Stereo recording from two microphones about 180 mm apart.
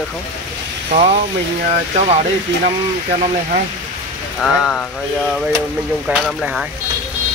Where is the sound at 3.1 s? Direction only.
35° right (ahead or behind).